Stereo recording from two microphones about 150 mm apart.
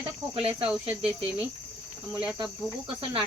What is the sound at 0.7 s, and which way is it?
Cricket, 5° right (ahead or behind).